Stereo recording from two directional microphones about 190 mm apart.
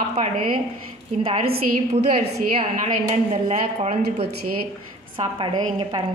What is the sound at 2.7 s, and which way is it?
A woman's voice, 40° right (ahead or behind).